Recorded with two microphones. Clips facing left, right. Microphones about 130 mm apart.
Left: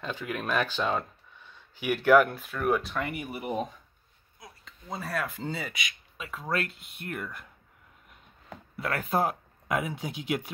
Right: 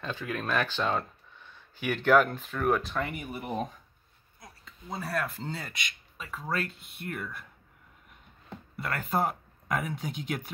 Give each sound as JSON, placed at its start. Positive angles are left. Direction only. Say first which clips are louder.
{"t": 0.0, "sound": "speech", "louder": "even", "side_deg": 15}
{"t": 4.4, "sound": "speech", "louder": "left 1 dB", "side_deg": 0}
{"t": 8.5, "sound": "speech", "louder": "left 3 dB", "side_deg": 5}